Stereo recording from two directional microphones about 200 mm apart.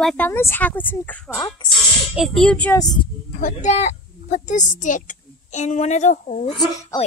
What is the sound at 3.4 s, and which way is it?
A woman's voice, 35° left (ahead or behind).